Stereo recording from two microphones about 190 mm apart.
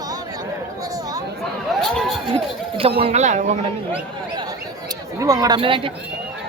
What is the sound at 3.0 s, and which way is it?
Speech, 35° right (ahead or behind).